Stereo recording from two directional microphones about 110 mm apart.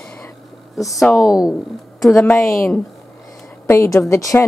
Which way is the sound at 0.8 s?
Centre (ahead or behind).